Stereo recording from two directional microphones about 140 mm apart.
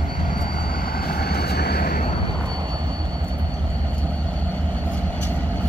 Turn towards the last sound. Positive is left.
turn(degrees=10)  # may be behind; listen again after turning